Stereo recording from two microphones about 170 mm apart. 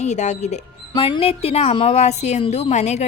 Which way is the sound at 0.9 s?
30° left (ahead or behind).